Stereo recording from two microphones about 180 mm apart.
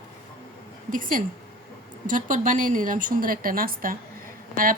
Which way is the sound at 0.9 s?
50° right (ahead or behind).